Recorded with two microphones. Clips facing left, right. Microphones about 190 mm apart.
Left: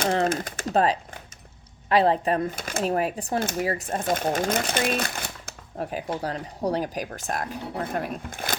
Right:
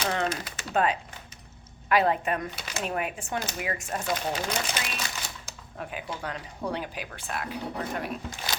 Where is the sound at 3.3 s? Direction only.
50° left (ahead or behind).